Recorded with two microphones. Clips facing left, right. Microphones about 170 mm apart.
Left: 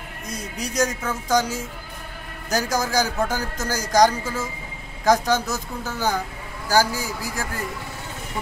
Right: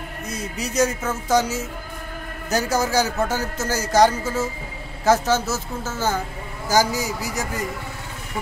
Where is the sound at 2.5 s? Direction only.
5° right (ahead or behind).